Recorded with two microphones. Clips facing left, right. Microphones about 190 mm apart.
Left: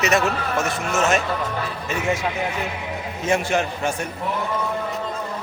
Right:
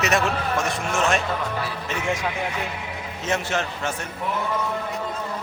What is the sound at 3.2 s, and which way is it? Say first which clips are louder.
Speech: left 4 dB; 10° left (ahead or behind).